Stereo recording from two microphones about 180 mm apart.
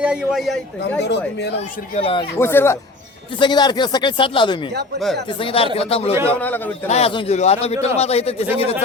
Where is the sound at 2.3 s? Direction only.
15° left (ahead or behind).